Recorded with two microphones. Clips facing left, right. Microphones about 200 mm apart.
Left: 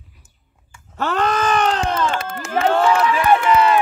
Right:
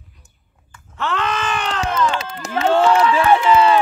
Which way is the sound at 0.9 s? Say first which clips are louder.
Left 3 dB; 40° left (ahead or behind).